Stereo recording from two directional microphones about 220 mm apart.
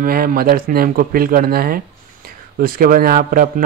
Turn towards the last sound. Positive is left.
turn(degrees=-40)  # may be behind; listen again after turning